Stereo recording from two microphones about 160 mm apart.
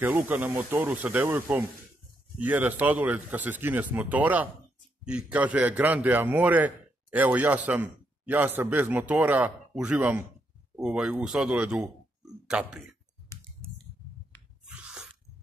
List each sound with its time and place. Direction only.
0.0 s a man's voice: 10° right (ahead or behind)
14.7 s sneeze: 5° right (ahead or behind)